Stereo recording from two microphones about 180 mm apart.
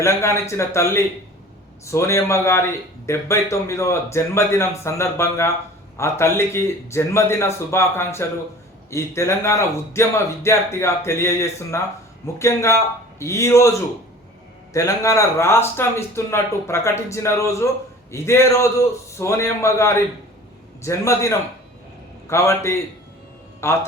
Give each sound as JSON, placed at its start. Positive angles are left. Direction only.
{"t": 0.0, "sound": "a man's voice", "side_deg": 15}